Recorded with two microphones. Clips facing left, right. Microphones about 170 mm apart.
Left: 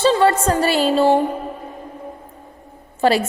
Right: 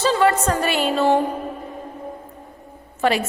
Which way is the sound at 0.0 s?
30° left (ahead or behind).